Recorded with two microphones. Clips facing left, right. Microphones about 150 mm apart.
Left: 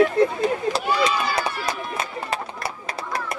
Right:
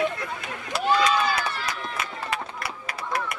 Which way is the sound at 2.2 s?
30° left (ahead or behind).